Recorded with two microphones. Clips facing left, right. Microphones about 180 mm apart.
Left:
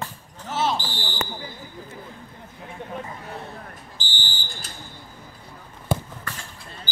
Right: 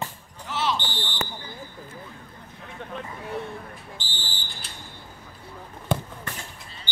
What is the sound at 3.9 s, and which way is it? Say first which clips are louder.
Fire alarm: left 1 dB; centre (ahead or behind).